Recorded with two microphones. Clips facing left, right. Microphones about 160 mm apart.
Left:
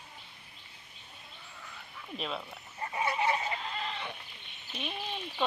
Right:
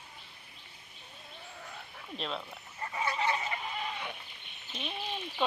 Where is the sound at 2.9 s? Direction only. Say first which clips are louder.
Left 2 dB; 30° left (ahead or behind).